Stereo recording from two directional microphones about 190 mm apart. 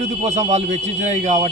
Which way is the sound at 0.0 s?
35° right (ahead or behind).